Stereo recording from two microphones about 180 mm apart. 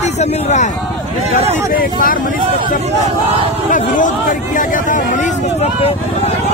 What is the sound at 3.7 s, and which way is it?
Speech, 45° left (ahead or behind).